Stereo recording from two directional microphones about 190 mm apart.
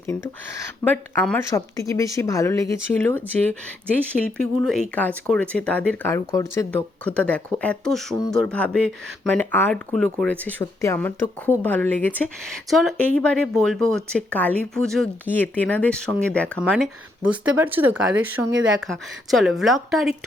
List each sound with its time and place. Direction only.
0.9 s speech: 10° left (ahead or behind)
4.4 s speech: centre (ahead or behind)